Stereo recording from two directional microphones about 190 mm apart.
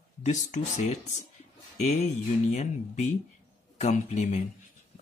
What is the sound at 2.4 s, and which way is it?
Speech, 35° left (ahead or behind).